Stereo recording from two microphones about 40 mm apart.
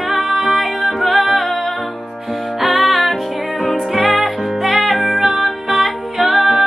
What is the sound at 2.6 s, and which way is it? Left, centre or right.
Music, centre.